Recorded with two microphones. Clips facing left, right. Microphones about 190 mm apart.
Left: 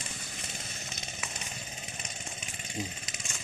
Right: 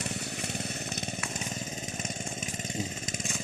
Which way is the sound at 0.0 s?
65° right (ahead or behind).